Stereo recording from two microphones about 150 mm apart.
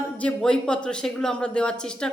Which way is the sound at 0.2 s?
5° left (ahead or behind).